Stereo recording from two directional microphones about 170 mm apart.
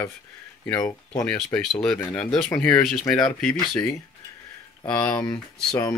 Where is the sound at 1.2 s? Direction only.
5° left (ahead or behind).